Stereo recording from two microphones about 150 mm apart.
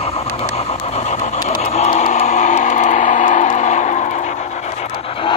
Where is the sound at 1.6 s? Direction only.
45° left (ahead or behind).